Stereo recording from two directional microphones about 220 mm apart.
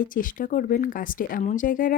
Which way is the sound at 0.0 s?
40° left (ahead or behind).